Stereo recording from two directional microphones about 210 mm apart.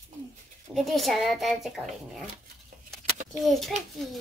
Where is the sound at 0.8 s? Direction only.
Centre (ahead or behind).